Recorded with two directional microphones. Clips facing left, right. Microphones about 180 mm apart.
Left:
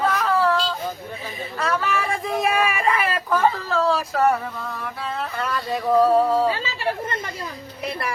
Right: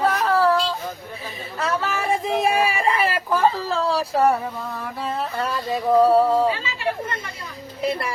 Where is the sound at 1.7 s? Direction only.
25° right (ahead or behind).